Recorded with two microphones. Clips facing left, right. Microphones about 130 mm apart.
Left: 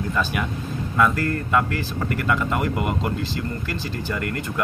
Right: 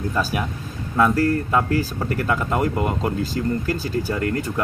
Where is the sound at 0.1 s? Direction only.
40° right (ahead or behind).